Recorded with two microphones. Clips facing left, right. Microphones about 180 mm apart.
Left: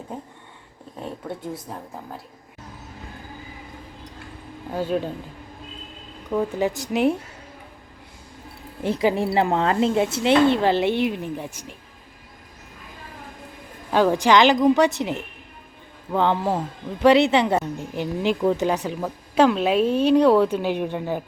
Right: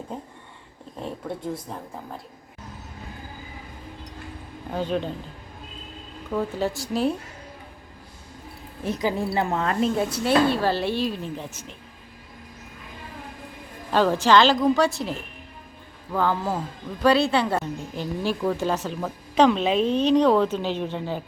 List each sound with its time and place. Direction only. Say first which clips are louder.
1.7 s a woman's voice: even; 5° left (ahead or behind)
4.7 s a woman's voice: left 2 dB; 5° left (ahead or behind)
6.3 s a woman's voice: left 3 dB; 15° left (ahead or behind)
8.8 s a woman's voice: left 4 dB; 25° left (ahead or behind)
13.9 s a woman's voice: left 1 dB; 15° left (ahead or behind)